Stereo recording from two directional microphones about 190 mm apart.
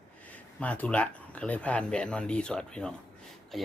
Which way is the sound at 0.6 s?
5° left (ahead or behind).